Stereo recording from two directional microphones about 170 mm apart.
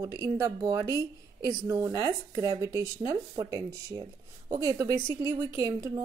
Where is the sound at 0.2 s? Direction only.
20° right (ahead or behind).